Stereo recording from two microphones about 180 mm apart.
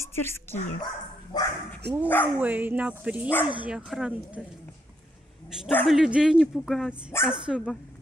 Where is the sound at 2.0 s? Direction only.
10° left (ahead or behind).